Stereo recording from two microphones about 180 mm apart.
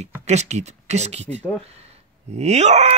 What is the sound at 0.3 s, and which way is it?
A man's voice, 40° right (ahead or behind).